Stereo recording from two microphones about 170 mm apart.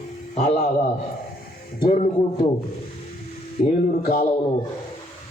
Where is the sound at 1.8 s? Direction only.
40° left (ahead or behind).